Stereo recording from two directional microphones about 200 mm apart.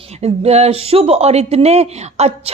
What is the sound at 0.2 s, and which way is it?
Speech, 30° right (ahead or behind).